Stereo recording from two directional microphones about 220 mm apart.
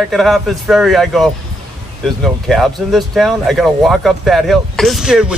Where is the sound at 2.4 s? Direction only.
Centre (ahead or behind).